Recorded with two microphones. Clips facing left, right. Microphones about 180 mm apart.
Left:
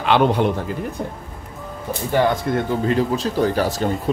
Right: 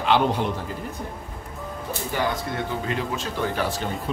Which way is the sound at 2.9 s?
35° left (ahead or behind).